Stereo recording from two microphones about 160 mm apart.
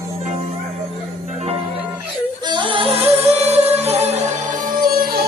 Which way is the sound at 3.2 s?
40° right (ahead or behind).